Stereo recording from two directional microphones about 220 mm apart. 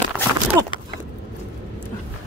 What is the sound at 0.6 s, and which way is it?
Speech, 15° right (ahead or behind).